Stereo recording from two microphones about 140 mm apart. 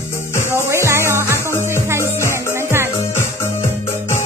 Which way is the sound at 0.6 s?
20° right (ahead or behind).